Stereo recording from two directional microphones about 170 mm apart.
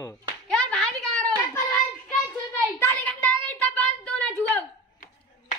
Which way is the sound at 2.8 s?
10° left (ahead or behind).